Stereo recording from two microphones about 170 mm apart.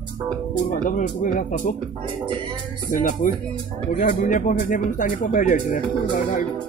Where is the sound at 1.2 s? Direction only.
50° left (ahead or behind).